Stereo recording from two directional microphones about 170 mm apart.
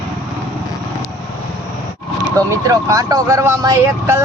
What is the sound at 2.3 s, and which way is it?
Speech, 20° right (ahead or behind).